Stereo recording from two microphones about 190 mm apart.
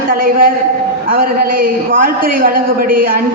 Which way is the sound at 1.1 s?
50° right (ahead or behind).